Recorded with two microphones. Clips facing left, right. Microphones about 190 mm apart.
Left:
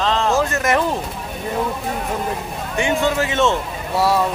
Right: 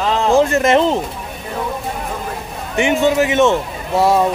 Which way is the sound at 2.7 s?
20° right (ahead or behind).